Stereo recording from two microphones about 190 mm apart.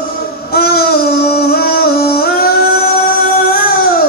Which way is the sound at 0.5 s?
55° left (ahead or behind).